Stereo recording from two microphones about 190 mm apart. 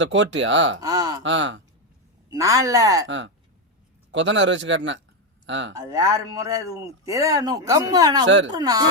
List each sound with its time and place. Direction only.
0.0 s a man's voice: 75° right (ahead or behind)
0.8 s gasp: 20° right (ahead or behind)
1.2 s a man's voice: 75° right (ahead or behind)
2.3 s speech: 15° right (ahead or behind)
3.1 s a man's voice: 75° right (ahead or behind)
5.7 s speech: 15° right (ahead or behind)